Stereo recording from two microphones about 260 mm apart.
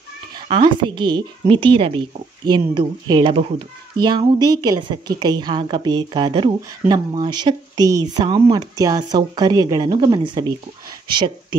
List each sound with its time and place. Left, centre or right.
0.7 s a woman's voice: centre